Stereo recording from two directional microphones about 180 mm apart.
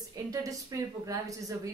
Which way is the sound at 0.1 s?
20° right (ahead or behind).